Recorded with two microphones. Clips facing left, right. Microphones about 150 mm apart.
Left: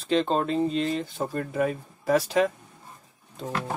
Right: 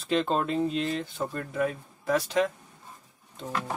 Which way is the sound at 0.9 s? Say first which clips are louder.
Left 2 dB; 35° left (ahead or behind).